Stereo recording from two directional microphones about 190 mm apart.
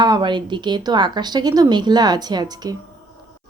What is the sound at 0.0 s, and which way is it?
Speech, 25° right (ahead or behind).